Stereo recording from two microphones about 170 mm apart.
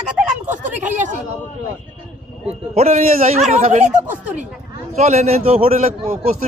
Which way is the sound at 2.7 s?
40° right (ahead or behind).